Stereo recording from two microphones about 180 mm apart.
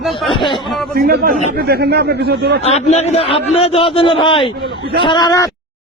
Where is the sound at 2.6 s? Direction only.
35° left (ahead or behind); by 5.5 s 20° left (ahead or behind).